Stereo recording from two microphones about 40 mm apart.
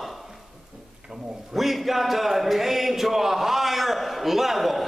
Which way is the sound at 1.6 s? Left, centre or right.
Centre.